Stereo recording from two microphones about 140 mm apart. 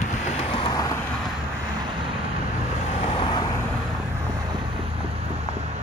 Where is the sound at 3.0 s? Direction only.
35° left (ahead or behind).